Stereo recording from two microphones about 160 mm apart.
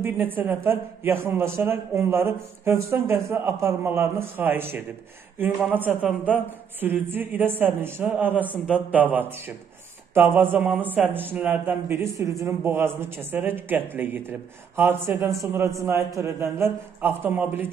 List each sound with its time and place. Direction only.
0.0 s a man's voice: 10° right (ahead or behind)
6.0 s a man's voice: 10° right (ahead or behind)